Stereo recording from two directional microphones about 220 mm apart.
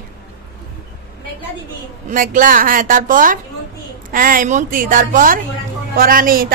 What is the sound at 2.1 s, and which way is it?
A woman's voice, 40° right (ahead or behind).